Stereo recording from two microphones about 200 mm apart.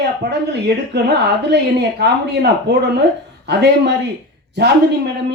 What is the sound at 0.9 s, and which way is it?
A woman's voice, 55° right (ahead or behind).